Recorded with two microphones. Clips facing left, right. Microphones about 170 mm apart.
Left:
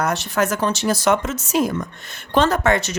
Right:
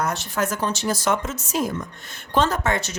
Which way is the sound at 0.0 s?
75° left (ahead or behind).